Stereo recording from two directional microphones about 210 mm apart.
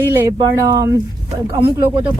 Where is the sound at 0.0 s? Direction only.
10° right (ahead or behind).